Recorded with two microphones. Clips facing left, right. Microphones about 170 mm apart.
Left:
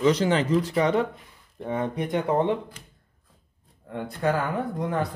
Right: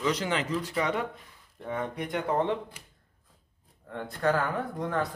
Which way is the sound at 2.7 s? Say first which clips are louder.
Left 4 dB; 10° right (ahead or behind).